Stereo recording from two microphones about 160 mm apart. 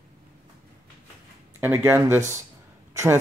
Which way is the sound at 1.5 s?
15° right (ahead or behind).